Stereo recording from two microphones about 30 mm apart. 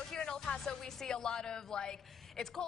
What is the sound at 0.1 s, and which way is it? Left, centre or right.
Music, centre.